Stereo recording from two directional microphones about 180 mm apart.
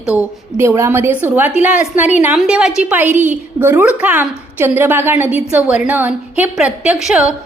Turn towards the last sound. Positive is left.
turn(degrees=-5)  # may be behind; listen again after turning